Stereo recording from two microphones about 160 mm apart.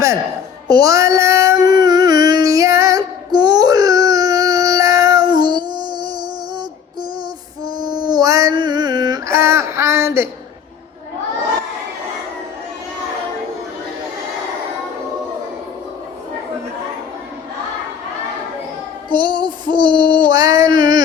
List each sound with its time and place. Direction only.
0.7 s child singing: 20° right (ahead or behind)
7.9 s a sound: 25° right (ahead or behind)
19.1 s female singing: 30° right (ahead or behind)